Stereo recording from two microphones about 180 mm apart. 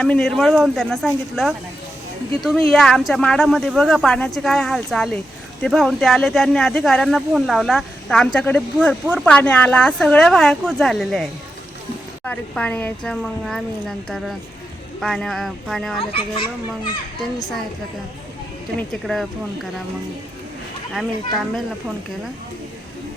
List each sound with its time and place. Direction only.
0.0 s speech: 5° left (ahead or behind)
16.0 s a child's voice: 30° left (ahead or behind)
18.8 s speech: centre (ahead or behind)